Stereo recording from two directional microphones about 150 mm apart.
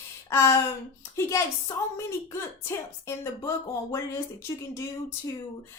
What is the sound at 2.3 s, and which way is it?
Speech, 15° left (ahead or behind).